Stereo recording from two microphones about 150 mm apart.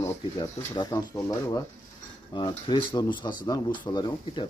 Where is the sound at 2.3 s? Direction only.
30° left (ahead or behind).